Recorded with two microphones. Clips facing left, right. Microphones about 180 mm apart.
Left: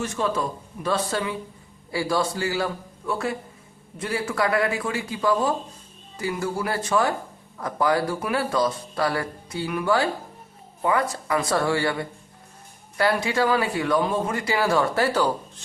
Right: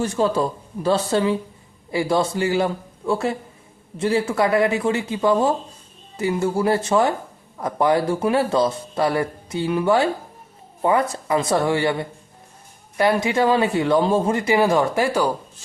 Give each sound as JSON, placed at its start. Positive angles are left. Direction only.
{"t": 0.0, "sound": "speech", "side_deg": -35}